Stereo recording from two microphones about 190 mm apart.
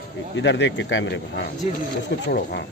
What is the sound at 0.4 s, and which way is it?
Speech, 70° left (ahead or behind).